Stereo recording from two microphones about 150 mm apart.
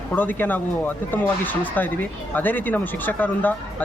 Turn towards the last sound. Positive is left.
turn(degrees=10)  # may be behind; listen again after turning